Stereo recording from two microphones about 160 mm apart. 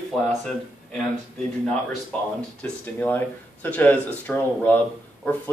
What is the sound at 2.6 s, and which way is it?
Speech, 10° left (ahead or behind).